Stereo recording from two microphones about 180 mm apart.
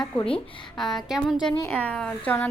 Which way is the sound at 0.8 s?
Centre (ahead or behind).